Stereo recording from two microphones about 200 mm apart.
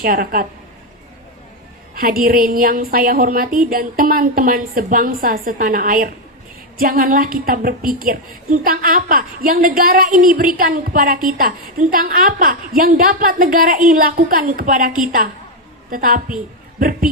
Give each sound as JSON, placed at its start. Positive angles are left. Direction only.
{"t": 0.0, "sound": "a woman's voice", "side_deg": -45}
{"t": 2.0, "sound": "a woman's voice", "side_deg": -45}